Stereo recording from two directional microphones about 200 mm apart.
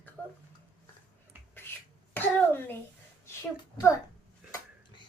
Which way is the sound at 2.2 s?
10° left (ahead or behind).